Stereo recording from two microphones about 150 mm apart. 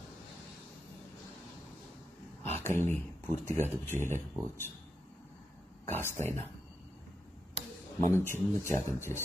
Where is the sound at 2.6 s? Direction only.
15° left (ahead or behind).